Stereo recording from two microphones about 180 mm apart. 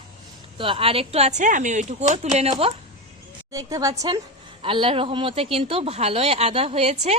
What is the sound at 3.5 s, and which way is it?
A woman's voice, 20° right (ahead or behind).